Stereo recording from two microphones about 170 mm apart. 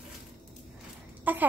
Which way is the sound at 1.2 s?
10° right (ahead or behind).